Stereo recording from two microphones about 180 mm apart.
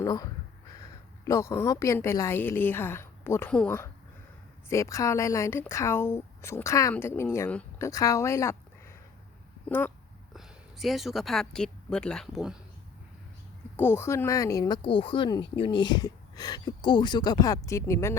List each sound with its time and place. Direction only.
0.0 s a woman's voice: 20° left (ahead or behind)
10.3 s speech: centre (ahead or behind)
13.7 s speech: 15° left (ahead or behind)